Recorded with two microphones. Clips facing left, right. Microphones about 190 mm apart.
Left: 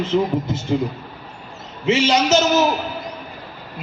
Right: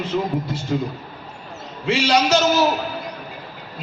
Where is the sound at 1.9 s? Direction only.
20° left (ahead or behind).